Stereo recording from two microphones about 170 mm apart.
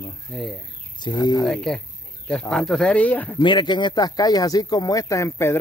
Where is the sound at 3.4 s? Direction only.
25° left (ahead or behind).